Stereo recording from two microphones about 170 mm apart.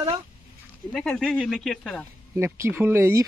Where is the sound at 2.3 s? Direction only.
15° right (ahead or behind).